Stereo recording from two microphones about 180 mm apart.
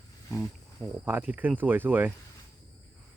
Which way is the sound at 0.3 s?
10° right (ahead or behind).